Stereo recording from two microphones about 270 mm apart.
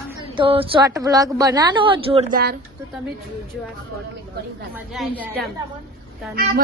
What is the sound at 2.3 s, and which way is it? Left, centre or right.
Speech, right.